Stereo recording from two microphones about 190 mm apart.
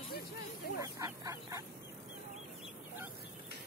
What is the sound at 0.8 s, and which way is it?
Fowl, 20° right (ahead or behind).